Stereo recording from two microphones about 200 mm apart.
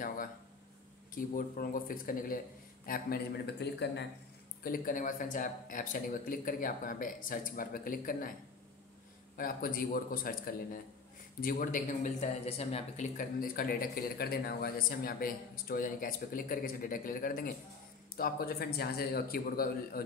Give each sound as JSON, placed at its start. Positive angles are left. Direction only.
{"t": 1.1, "sound": "speech", "side_deg": 45}
{"t": 4.6, "sound": "speech", "side_deg": 45}
{"t": 9.4, "sound": "speech", "side_deg": 45}